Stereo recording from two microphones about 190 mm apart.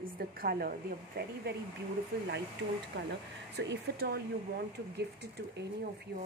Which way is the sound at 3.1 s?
60° right (ahead or behind).